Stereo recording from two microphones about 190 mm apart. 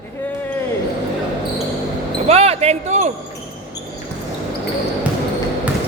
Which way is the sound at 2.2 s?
35° right (ahead or behind).